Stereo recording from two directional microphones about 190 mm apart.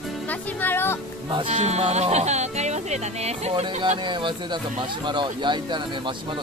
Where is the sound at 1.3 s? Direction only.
30° right (ahead or behind).